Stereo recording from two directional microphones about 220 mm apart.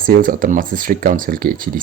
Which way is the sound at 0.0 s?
40° right (ahead or behind).